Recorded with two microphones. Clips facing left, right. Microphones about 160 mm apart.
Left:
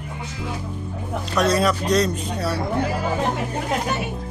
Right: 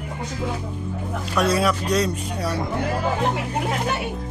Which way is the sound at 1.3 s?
10° right (ahead or behind).